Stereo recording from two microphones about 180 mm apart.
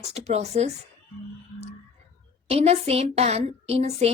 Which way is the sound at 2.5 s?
35° right (ahead or behind).